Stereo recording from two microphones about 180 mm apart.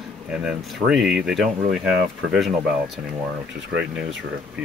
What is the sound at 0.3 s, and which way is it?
Speech, 5° right (ahead or behind).